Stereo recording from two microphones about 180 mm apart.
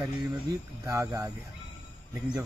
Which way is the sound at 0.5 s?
15° right (ahead or behind).